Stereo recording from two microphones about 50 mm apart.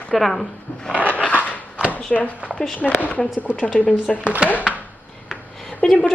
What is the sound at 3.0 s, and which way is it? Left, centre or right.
Speech, left.